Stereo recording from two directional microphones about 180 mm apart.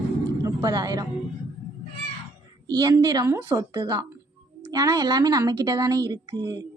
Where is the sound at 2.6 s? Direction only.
20° right (ahead or behind).